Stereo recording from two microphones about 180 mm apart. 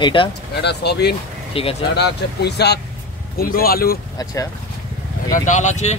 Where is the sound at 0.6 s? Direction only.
65° left (ahead or behind).